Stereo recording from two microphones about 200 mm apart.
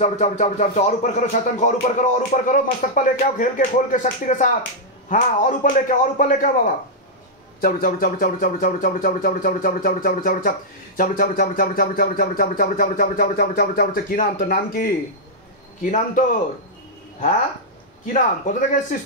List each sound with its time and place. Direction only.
0.0 s speech: 35° left (ahead or behind)
18.1 s speech: 40° left (ahead or behind)